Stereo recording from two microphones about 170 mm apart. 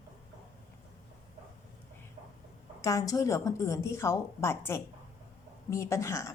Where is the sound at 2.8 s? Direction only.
20° left (ahead or behind).